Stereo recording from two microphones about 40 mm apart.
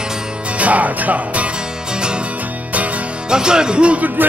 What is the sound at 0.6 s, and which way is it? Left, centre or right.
Music, right.